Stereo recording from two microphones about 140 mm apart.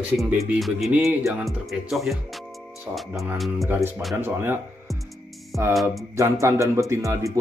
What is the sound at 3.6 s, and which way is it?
Speech, 15° right (ahead or behind).